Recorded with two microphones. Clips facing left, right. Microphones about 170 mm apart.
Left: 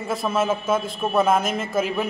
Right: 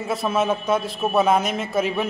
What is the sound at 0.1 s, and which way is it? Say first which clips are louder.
A man's voice: right 1 dB; centre (ahead or behind).